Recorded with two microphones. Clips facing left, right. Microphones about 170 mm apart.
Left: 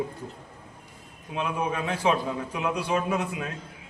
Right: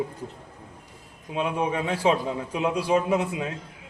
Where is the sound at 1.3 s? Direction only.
20° right (ahead or behind).